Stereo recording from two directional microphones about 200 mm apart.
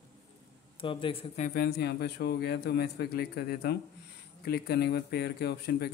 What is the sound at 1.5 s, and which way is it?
Speech, 50° left (ahead or behind).